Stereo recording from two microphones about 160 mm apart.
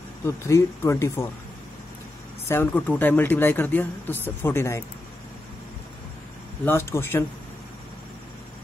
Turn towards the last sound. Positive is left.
turn(degrees=15)  # may be behind; listen again after turning